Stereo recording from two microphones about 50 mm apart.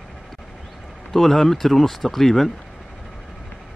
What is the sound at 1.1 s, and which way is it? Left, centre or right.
Speech, centre.